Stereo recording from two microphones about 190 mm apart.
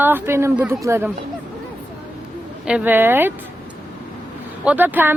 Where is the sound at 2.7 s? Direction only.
10° right (ahead or behind).